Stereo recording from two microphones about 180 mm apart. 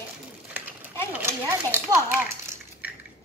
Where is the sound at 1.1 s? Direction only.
15° right (ahead or behind).